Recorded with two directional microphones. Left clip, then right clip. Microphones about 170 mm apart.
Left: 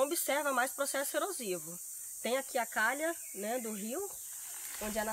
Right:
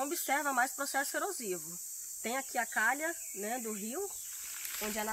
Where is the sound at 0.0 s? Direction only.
90° left; by 4.0 s 65° left (ahead or behind).